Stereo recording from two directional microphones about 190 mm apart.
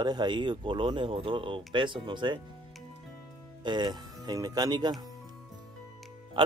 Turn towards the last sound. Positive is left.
turn(degrees=-25)  # may be behind; listen again after turning